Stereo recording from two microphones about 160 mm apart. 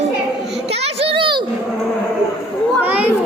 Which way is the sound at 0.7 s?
40° right (ahead or behind).